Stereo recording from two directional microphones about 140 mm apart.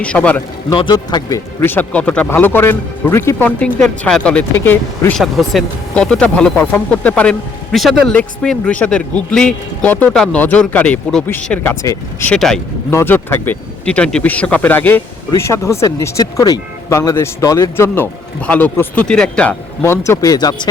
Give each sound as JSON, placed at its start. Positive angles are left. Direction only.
{"t": 0.0, "sound": "speech", "side_deg": 10}
{"t": 0.7, "sound": "speech", "side_deg": 30}
{"t": 1.6, "sound": "speech", "side_deg": 10}
{"t": 5.1, "sound": "speech", "side_deg": 0}
{"t": 11.8, "sound": "speech", "side_deg": 25}
{"t": 12.3, "sound": "speech", "side_deg": 5}
{"t": 12.9, "sound": "speech", "side_deg": 15}
{"t": 19.8, "sound": "speech", "side_deg": 20}